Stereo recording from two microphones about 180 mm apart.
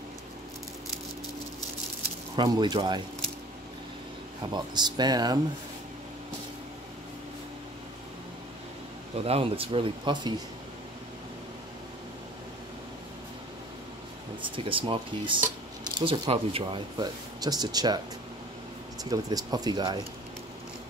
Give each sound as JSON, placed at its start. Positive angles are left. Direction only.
{"t": 2.3, "sound": "speech", "side_deg": -25}
{"t": 4.4, "sound": "speech", "side_deg": -25}
{"t": 9.2, "sound": "speech", "side_deg": -30}
{"t": 14.4, "sound": "speech", "side_deg": -30}
{"t": 19.0, "sound": "speech", "side_deg": -20}